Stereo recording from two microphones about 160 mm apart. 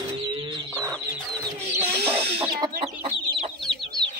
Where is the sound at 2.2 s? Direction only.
35° right (ahead or behind).